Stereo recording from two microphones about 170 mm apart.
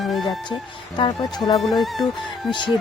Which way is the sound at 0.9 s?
25° left (ahead or behind).